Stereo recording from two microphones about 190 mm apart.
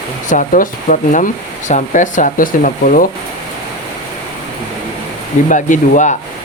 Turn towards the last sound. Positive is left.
turn(degrees=40)  # may be behind; listen again after turning